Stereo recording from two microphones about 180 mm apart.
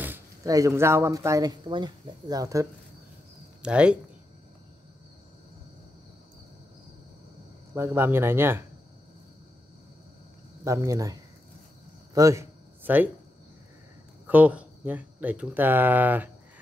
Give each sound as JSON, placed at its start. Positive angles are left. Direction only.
{"t": 0.0, "sound": "speech", "side_deg": -15}
{"t": 3.6, "sound": "speech", "side_deg": -5}
{"t": 7.7, "sound": "speech", "side_deg": -15}
{"t": 10.6, "sound": "speech", "side_deg": -15}
{"t": 12.1, "sound": "a sound", "side_deg": -15}
{"t": 14.2, "sound": "speech", "side_deg": -10}